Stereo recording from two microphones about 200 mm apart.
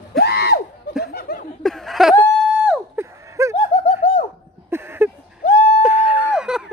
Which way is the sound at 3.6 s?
40° left (ahead or behind).